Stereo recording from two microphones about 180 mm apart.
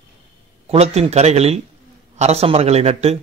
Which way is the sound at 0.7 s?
35° right (ahead or behind).